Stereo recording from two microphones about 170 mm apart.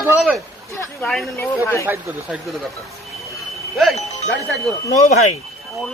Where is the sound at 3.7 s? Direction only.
Centre (ahead or behind).